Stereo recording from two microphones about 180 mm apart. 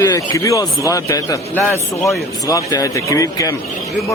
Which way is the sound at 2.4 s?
20° left (ahead or behind).